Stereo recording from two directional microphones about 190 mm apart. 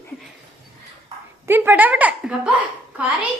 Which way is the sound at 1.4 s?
10° right (ahead or behind).